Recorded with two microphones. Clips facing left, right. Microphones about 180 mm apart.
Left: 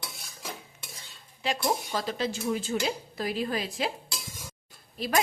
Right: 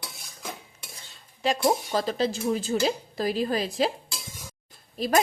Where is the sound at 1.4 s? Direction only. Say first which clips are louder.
Right 5 dB; 40° right (ahead or behind).